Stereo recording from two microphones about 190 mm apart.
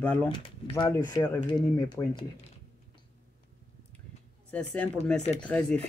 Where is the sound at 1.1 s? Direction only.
20° left (ahead or behind).